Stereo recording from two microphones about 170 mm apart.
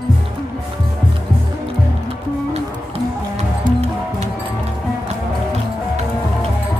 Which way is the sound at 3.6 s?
40° right (ahead or behind).